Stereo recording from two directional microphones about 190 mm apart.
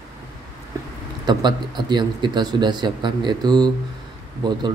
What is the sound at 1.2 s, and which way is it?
Speech, 25° right (ahead or behind).